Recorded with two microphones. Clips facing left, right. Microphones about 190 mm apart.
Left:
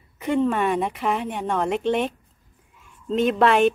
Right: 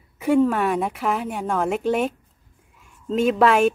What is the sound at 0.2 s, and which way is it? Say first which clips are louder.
A woman's voice: right 3 dB; 5° right (ahead or behind).